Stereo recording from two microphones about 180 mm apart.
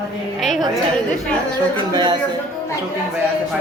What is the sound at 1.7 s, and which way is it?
Speech, 25° right (ahead or behind).